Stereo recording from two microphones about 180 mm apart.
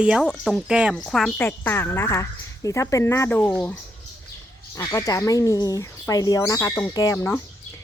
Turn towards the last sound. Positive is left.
turn(degrees=15)  # may be behind; listen again after turning